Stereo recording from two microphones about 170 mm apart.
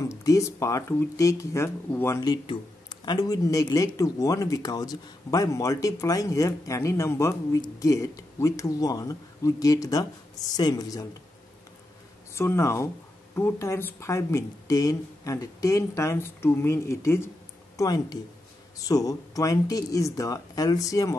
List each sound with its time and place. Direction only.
0.0 s speech: 20° left (ahead or behind)
12.4 s speech: 15° left (ahead or behind)